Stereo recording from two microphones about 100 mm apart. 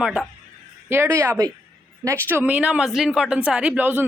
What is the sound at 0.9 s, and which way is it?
Speech, 25° right (ahead or behind).